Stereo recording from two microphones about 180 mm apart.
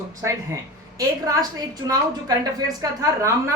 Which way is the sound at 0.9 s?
20° right (ahead or behind).